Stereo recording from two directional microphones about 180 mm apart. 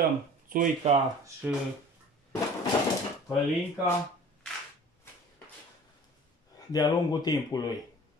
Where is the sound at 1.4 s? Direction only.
10° right (ahead or behind).